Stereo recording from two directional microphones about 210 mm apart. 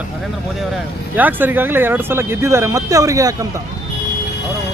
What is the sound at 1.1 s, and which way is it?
Speech, 10° right (ahead or behind).